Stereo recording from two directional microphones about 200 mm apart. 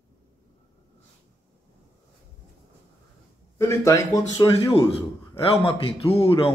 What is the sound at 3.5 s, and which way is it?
A man's voice, 15° left (ahead or behind).